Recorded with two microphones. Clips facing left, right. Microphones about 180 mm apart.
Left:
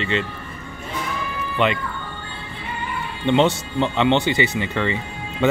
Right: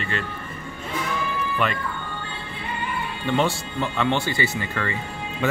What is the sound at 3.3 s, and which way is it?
Speech, 20° left (ahead or behind).